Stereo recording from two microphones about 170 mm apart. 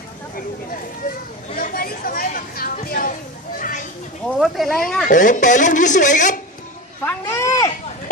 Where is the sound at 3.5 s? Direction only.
50° left (ahead or behind).